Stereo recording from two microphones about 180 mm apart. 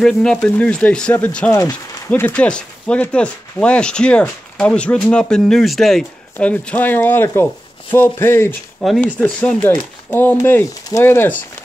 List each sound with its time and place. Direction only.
0.0 s speech: 5° left (ahead or behind)
1.5 s speech: 20° left (ahead or behind)